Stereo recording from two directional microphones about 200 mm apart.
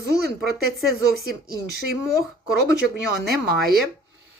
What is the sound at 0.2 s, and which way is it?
Speech, 50° right (ahead or behind).